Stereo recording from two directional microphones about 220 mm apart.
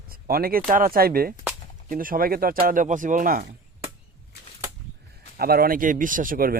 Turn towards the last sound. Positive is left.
turn(degrees=-40)  # may be behind; listen again after turning